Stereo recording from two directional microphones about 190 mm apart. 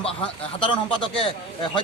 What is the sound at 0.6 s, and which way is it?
Speech, 25° left (ahead or behind).